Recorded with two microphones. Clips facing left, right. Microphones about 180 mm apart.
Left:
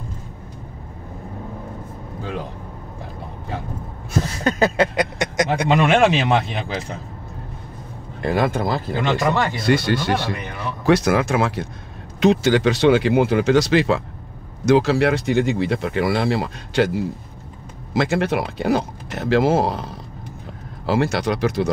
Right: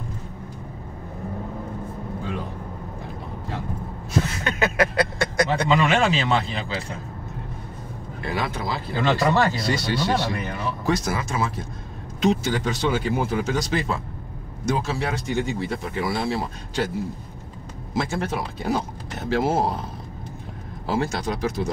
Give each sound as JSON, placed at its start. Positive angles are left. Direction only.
{"t": 4.5, "sound": "a sound", "side_deg": 35}
{"t": 4.9, "sound": "a sound", "side_deg": 20}
{"t": 5.7, "sound": "speech", "side_deg": 60}
{"t": 8.2, "sound": "speech", "side_deg": 50}
{"t": 9.0, "sound": "speech", "side_deg": 20}
{"t": 9.7, "sound": "speech", "side_deg": 55}
{"t": 20.8, "sound": "speech", "side_deg": 75}